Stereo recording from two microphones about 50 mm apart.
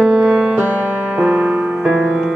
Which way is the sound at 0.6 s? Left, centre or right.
Right.